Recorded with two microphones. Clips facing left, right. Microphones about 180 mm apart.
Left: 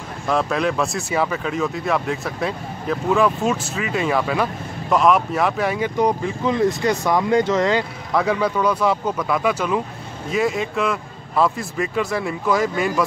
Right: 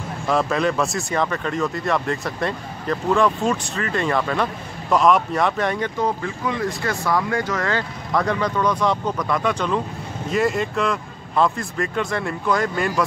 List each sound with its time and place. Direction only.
0.3 s speech: centre (ahead or behind)
5.9 s speech: 15° left (ahead or behind)
8.1 s speech: 5° left (ahead or behind)